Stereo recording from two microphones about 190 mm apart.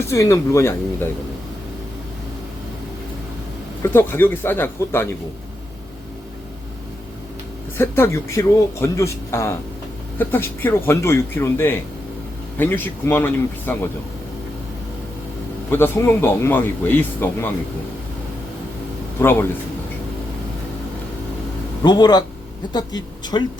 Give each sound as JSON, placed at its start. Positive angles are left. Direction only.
{"t": 0.1, "sound": "speech", "side_deg": 15}
{"t": 3.8, "sound": "speech", "side_deg": 10}
{"t": 7.8, "sound": "speech", "side_deg": 10}
{"t": 15.7, "sound": "speech", "side_deg": 10}
{"t": 19.2, "sound": "speech", "side_deg": 10}
{"t": 21.8, "sound": "speech", "side_deg": 20}
{"t": 23.3, "sound": "speech", "side_deg": 20}